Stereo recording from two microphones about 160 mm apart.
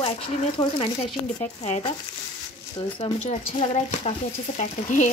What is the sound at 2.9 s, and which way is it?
Speech, 35° left (ahead or behind).